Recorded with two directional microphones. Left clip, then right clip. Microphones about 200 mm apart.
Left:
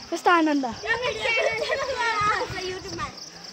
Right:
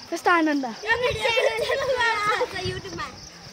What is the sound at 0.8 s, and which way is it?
Children playing, 50° right (ahead or behind).